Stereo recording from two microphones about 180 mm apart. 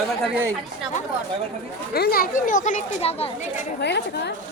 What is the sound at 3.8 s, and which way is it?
Speech, 70° left (ahead or behind).